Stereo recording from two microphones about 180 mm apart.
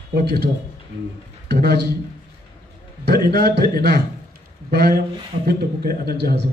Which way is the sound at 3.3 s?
60° right (ahead or behind).